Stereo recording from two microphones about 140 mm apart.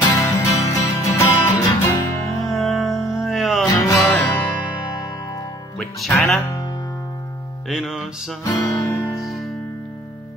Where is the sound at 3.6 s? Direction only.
25° left (ahead or behind).